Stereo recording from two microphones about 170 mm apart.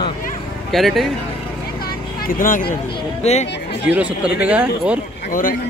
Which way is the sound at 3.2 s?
40° left (ahead or behind).